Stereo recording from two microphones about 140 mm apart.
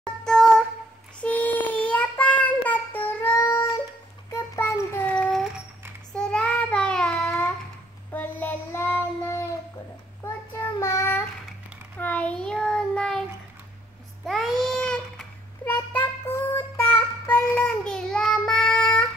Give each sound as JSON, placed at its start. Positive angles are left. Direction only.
{"t": 0.0, "sound": "a sound", "side_deg": 5}
{"t": 1.2, "sound": "child singing", "side_deg": 10}
{"t": 14.2, "sound": "baby cry", "side_deg": 0}
{"t": 15.6, "sound": "child singing", "side_deg": 15}